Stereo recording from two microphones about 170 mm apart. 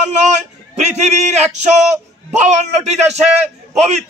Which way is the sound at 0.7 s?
40° right (ahead or behind).